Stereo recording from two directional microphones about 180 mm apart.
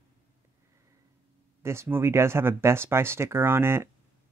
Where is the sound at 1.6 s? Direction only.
15° right (ahead or behind).